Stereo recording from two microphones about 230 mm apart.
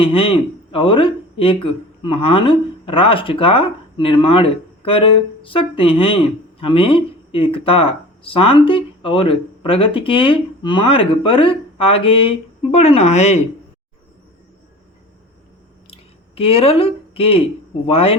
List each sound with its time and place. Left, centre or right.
0.0 s speech: left
15.9 s a sound: left
17.8 s speech: left